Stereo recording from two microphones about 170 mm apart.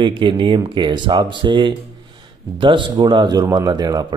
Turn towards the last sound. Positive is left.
turn(degrees=-25)  # may be behind; listen again after turning